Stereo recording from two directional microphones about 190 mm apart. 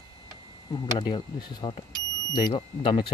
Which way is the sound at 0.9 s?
25° left (ahead or behind).